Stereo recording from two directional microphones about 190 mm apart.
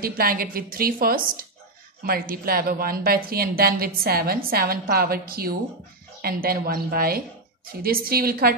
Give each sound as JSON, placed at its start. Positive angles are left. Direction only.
{"t": 0.0, "sound": "a woman's voice", "side_deg": -50}